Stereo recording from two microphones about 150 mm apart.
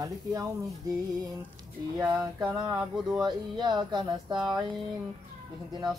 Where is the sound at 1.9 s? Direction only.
20° right (ahead or behind).